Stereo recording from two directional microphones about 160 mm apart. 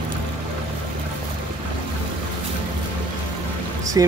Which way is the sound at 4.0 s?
20° right (ahead or behind).